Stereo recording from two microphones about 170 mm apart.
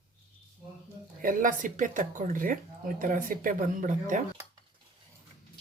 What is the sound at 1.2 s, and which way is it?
Speech, 55° right (ahead or behind).